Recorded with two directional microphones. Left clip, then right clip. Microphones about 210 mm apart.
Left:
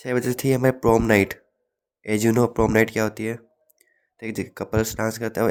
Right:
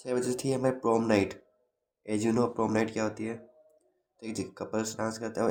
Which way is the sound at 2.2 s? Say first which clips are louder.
Left 8 dB; 40° left (ahead or behind).